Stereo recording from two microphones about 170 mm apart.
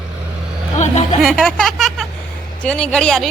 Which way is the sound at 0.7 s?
40° left (ahead or behind).